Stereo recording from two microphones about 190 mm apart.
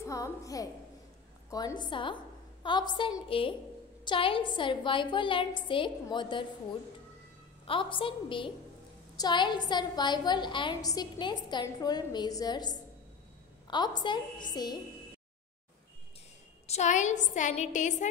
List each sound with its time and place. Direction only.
0.0 s a woman's voice: 15° left (ahead or behind)
1.8 s a woman's voice: 25° left (ahead or behind)
7.6 s a woman's voice: 25° left (ahead or behind)
16.6 s a woman's voice: 35° left (ahead or behind)